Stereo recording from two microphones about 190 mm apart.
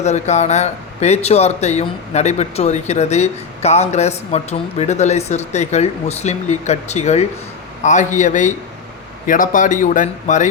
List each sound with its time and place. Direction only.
0.0 s speech: 35° left (ahead or behind)